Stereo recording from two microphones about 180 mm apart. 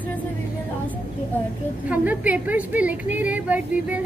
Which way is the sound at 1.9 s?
10° right (ahead or behind).